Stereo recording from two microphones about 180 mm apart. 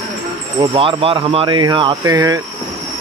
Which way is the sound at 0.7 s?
30° right (ahead or behind).